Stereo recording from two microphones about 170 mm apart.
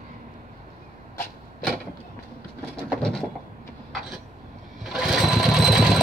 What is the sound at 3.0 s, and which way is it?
Bird, 5° left (ahead or behind).